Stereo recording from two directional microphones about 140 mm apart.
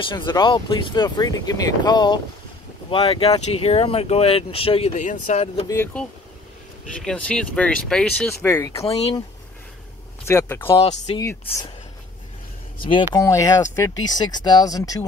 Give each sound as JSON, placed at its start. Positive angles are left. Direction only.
{"t": 0.1, "sound": "speech", "side_deg": 30}
{"t": 2.9, "sound": "speech", "side_deg": 40}
{"t": 4.9, "sound": "speech", "side_deg": 65}
{"t": 7.0, "sound": "speech", "side_deg": 5}
{"t": 8.5, "sound": "speech", "side_deg": 20}
{"t": 8.8, "sound": "speech", "side_deg": 45}
{"t": 10.2, "sound": "speech", "side_deg": 15}
{"t": 11.1, "sound": "speech", "side_deg": 45}
{"t": 13.1, "sound": "speech", "side_deg": 20}